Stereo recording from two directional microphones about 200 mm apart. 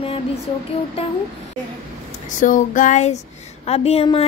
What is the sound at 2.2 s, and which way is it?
Child singing, 40° left (ahead or behind).